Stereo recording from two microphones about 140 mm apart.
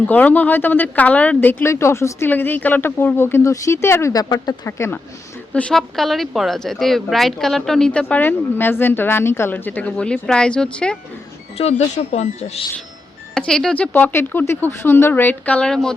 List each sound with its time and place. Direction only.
0.1 s speech: 10° left (ahead or behind)
5.5 s speech: 5° left (ahead or behind)
11.6 s speech: 45° left (ahead or behind)
13.3 s speech: 5° left (ahead or behind)